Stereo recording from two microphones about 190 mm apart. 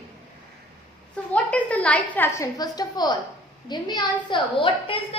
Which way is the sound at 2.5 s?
20° left (ahead or behind).